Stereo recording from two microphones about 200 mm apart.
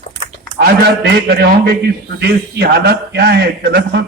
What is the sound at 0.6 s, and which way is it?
A man's voice, 55° right (ahead or behind).